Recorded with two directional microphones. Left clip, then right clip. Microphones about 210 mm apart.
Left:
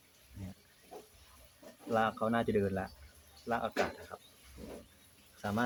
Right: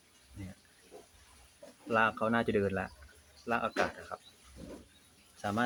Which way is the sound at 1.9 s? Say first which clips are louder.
Right 2 dB; 10° right (ahead or behind).